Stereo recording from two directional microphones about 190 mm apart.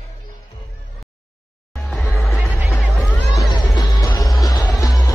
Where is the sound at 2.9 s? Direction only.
Centre (ahead or behind).